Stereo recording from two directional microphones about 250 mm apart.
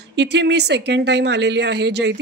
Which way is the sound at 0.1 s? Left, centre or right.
Right.